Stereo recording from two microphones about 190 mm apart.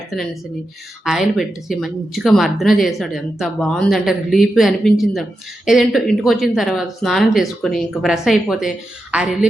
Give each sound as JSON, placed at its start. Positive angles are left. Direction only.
{"t": 1.0, "sound": "speech", "side_deg": 0}